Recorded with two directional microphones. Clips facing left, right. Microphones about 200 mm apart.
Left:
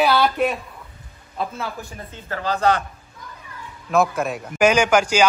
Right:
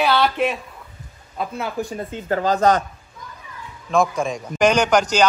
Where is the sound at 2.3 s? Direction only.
40° right (ahead or behind).